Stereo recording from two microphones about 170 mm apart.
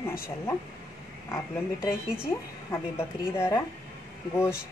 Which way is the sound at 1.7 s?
5° right (ahead or behind).